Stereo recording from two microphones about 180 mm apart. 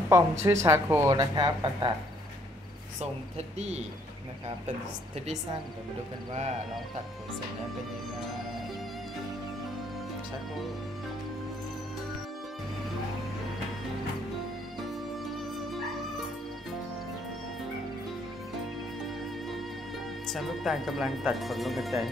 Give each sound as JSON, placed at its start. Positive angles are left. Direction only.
{"t": 0.1, "sound": "speech", "side_deg": -15}
{"t": 3.0, "sound": "speech", "side_deg": -35}
{"t": 15.3, "sound": "music", "side_deg": 0}
{"t": 20.2, "sound": "speech", "side_deg": 0}